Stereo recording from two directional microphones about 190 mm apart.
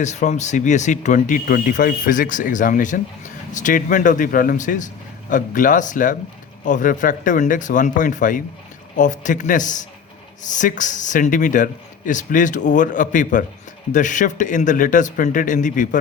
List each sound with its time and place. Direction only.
0.0 s speech: 40° left (ahead or behind)